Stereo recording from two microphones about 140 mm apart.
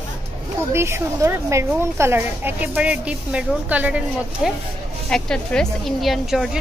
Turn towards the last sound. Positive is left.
turn(degrees=0)  # may be behind; listen again after turning